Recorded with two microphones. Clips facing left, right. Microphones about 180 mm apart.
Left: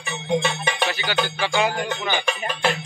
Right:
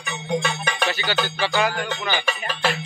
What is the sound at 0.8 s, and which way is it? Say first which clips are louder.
Speech: even; 10° left (ahead or behind).